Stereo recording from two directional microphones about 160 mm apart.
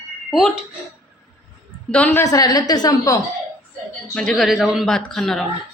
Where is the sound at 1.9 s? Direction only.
10° left (ahead or behind).